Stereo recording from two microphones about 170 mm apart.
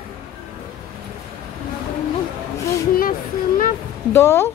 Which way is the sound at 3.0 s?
55° left (ahead or behind).